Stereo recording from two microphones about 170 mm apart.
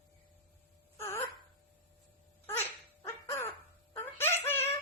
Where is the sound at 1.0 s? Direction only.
15° left (ahead or behind).